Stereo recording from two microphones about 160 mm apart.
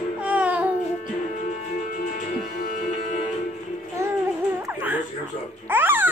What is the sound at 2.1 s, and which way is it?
Music, 55° left (ahead or behind).